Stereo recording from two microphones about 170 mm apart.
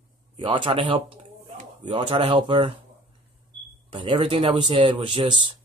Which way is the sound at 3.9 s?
30° right (ahead or behind).